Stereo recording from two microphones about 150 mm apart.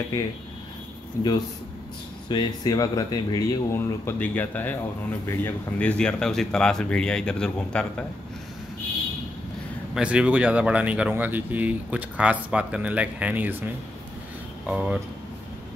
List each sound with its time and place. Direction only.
2.2 s speech: 30° left (ahead or behind); by 7.8 s 5° left (ahead or behind)
9.9 s speech: 10° right (ahead or behind)
14.7 s speech: 5° right (ahead or behind)